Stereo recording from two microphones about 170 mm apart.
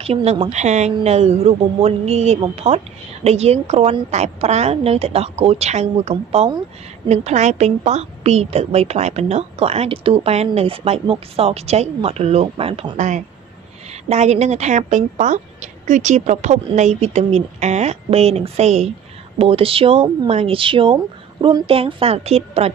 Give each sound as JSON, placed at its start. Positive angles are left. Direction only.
{"t": 0.0, "sound": "a woman's voice", "side_deg": -35}